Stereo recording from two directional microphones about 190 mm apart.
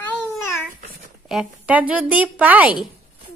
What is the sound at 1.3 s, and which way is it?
A woman's voice, 5° right (ahead or behind).